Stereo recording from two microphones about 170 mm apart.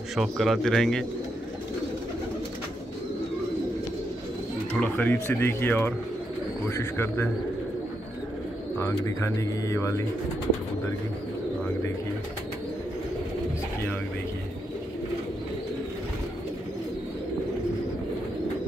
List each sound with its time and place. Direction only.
0.1 s speech: centre (ahead or behind)
4.7 s speech: 10° left (ahead or behind)
8.7 s speech: 20° left (ahead or behind)